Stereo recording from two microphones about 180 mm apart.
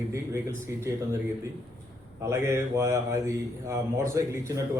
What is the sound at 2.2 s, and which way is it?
Speech, 15° right (ahead or behind).